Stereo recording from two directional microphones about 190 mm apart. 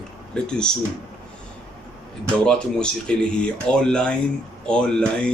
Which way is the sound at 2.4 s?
5° left (ahead or behind).